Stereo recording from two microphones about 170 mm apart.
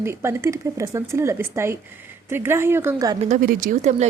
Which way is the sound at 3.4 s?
50° right (ahead or behind).